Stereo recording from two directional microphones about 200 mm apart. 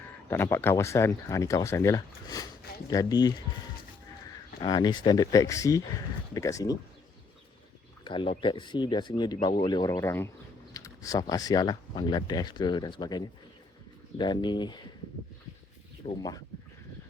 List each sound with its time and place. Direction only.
0.3 s speech: 10° left (ahead or behind)
4.6 s speech: 20° left (ahead or behind)
8.0 s speech: 25° left (ahead or behind)
16.1 s speech: 20° left (ahead or behind)